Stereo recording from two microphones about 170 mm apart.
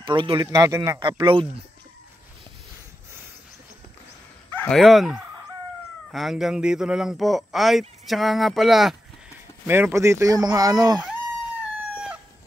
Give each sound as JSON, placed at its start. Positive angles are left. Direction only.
{"t": 0.0, "sound": "speech", "side_deg": -30}
{"t": 1.0, "sound": "speech", "side_deg": -30}
{"t": 4.6, "sound": "speech", "side_deg": 5}
{"t": 9.7, "sound": "speech", "side_deg": -15}